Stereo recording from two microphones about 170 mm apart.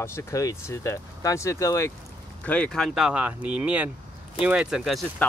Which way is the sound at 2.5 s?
5° left (ahead or behind).